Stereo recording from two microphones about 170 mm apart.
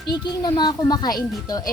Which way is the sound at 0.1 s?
25° left (ahead or behind).